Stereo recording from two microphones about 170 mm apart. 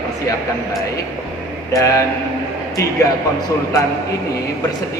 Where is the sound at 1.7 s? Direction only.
20° left (ahead or behind).